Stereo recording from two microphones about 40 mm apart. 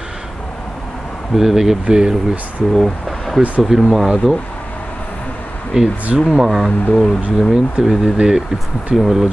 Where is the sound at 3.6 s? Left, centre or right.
Centre.